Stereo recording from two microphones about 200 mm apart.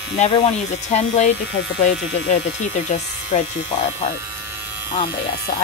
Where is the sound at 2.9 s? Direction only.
35° left (ahead or behind).